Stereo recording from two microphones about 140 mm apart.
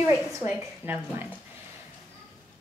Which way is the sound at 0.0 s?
15° right (ahead or behind).